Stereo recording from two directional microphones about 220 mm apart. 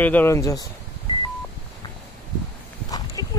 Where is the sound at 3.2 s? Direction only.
15° left (ahead or behind).